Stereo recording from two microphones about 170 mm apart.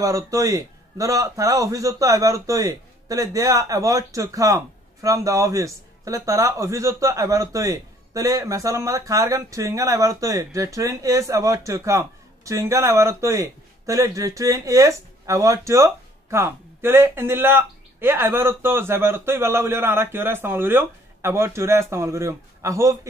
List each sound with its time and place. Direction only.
0.0 s a man's voice: 20° right (ahead or behind)